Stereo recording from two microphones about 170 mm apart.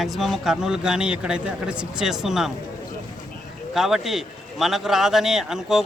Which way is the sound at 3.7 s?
Centre (ahead or behind).